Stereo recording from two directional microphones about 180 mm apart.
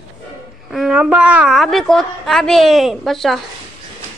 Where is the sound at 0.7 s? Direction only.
5° right (ahead or behind).